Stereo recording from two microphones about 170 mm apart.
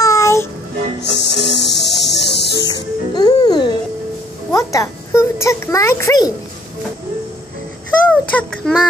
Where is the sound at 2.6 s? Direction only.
25° left (ahead or behind).